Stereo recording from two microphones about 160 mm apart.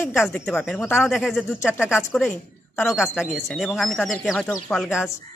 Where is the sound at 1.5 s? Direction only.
10° left (ahead or behind).